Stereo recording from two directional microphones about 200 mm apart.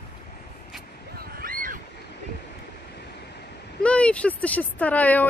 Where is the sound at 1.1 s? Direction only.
45° right (ahead or behind).